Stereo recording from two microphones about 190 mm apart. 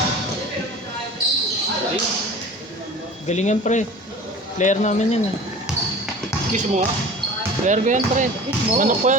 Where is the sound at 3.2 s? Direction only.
40° left (ahead or behind).